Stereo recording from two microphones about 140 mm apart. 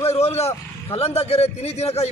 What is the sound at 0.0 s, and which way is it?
Vehicle, 50° left (ahead or behind).